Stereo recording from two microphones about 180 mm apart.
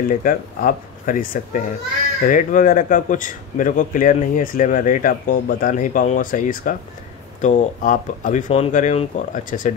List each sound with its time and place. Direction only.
0.1 s a man's voice: 50° left (ahead or behind)